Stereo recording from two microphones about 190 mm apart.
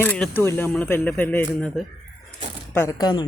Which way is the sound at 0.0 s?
5° left (ahead or behind).